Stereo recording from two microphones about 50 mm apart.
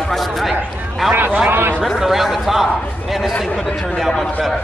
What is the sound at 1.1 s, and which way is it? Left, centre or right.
Speech, right.